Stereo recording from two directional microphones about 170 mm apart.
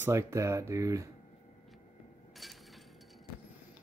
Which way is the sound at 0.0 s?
15° right (ahead or behind).